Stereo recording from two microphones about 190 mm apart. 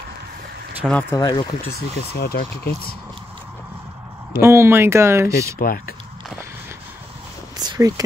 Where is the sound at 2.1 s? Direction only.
55° left (ahead or behind).